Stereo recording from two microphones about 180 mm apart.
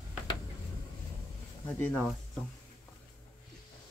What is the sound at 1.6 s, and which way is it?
Speech, 5° left (ahead or behind).